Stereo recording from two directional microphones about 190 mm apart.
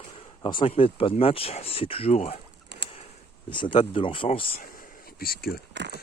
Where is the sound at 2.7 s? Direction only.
60° right (ahead or behind).